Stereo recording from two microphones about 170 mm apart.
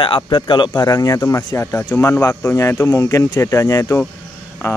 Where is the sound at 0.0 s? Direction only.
30° left (ahead or behind).